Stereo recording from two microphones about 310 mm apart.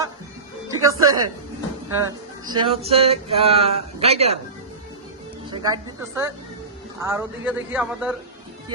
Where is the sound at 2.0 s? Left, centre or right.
Centre.